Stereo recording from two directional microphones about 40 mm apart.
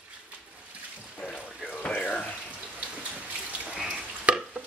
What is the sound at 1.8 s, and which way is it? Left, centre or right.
Water tap, left.